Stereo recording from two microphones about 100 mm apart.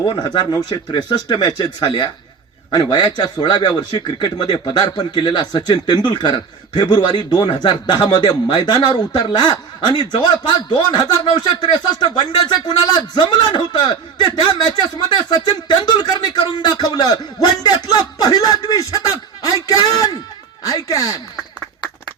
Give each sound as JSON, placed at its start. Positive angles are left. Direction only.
{"t": 0.2, "sound": "a man's voice", "side_deg": 45}